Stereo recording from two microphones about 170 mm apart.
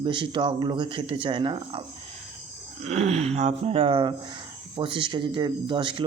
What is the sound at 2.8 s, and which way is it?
Speech, 40° right (ahead or behind).